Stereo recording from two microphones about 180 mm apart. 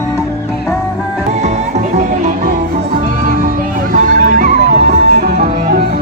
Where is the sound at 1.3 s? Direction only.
40° right (ahead or behind).